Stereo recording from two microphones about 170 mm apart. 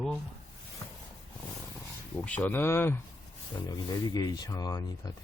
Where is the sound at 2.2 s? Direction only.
10° left (ahead or behind).